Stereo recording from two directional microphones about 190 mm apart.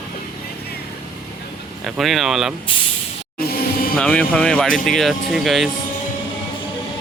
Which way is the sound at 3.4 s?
50° left (ahead or behind).